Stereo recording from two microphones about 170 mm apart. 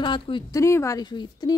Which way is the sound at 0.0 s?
30° left (ahead or behind).